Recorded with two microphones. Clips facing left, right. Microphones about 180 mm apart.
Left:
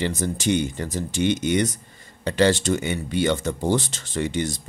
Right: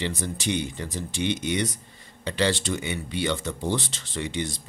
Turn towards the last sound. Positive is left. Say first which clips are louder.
# left 5 dB
turn(degrees=45)  # may be behind; listen again after turning